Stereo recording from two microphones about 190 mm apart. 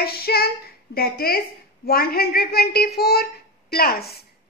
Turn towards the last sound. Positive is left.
turn(degrees=55)  # may be behind; listen again after turning